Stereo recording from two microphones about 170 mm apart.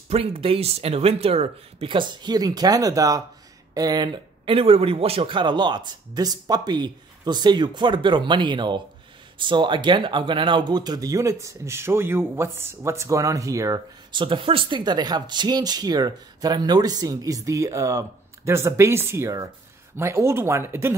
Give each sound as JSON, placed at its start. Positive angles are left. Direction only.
{"t": 0.1, "sound": "speech", "side_deg": -35}